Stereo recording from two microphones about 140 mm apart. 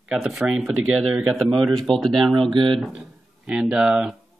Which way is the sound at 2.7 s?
Centre (ahead or behind).